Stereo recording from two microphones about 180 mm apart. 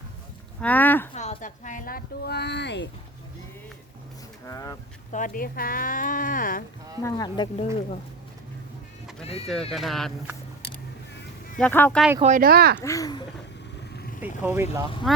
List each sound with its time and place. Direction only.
0.6 s speech: 10° left (ahead or behind)
1.1 s speech: 40° left (ahead or behind); by 2.9 s 75° left (ahead or behind)
4.4 s speech: 20° left (ahead or behind)
5.1 s speech: 50° left (ahead or behind)
7.0 s speech: 20° left (ahead or behind)
9.7 s speech: centre (ahead or behind)
11.6 s speech: 10° left (ahead or behind)
12.2 s speech: 50° right (ahead or behind)
12.8 s speech: 20° left (ahead or behind)
13.9 s vehicle: 60° left (ahead or behind)
14.4 s speech: 10° right (ahead or behind)
15.1 s speech: centre (ahead or behind)